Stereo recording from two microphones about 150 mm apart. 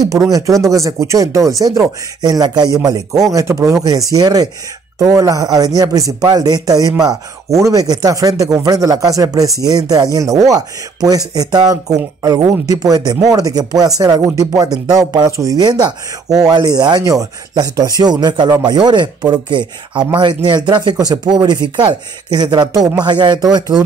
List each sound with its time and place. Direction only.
0.3 s speech: 20° right (ahead or behind)
19.9 s speech: 10° right (ahead or behind)
20.2 s speech: 30° right (ahead or behind)